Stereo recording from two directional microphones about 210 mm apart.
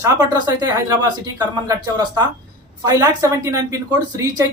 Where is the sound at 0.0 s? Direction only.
20° right (ahead or behind).